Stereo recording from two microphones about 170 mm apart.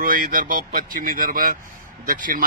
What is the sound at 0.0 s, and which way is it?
Speech, 55° right (ahead or behind).